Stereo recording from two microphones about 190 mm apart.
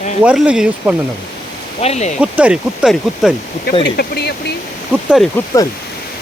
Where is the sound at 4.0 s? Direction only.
60° left (ahead or behind).